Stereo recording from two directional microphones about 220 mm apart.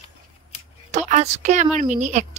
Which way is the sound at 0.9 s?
30° right (ahead or behind).